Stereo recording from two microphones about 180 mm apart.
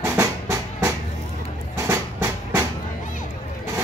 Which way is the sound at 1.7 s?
15° right (ahead or behind).